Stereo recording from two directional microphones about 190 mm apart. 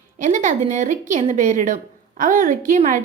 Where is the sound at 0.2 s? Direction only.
40° right (ahead or behind).